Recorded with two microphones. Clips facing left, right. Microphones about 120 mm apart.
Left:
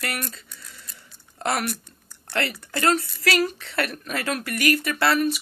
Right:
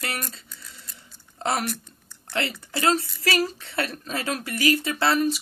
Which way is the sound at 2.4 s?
20° right (ahead or behind).